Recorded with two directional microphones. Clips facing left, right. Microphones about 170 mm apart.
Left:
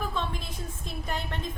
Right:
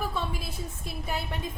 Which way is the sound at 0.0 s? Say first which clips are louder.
Even; 10° right (ahead or behind).